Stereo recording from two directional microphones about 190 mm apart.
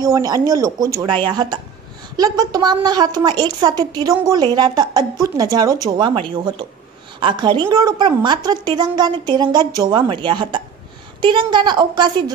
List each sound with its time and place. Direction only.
0.1 s a woman's voice: 20° right (ahead or behind)